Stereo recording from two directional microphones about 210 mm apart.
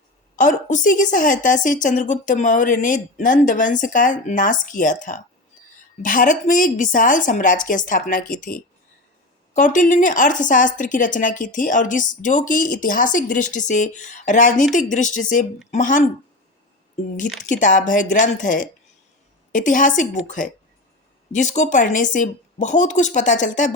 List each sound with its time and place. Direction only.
0.3 s speech: 40° left (ahead or behind)
9.6 s speech: 40° left (ahead or behind)
17.4 s speech: 40° left (ahead or behind)